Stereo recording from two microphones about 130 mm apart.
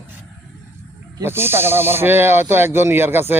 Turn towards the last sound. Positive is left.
turn(degrees=-15)  # may be behind; listen again after turning